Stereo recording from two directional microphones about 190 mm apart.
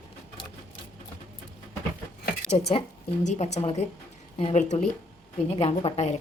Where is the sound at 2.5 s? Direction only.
35° left (ahead or behind).